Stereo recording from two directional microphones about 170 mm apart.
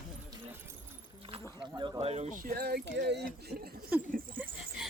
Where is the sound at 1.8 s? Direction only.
30° right (ahead or behind); by 3.7 s 65° right (ahead or behind).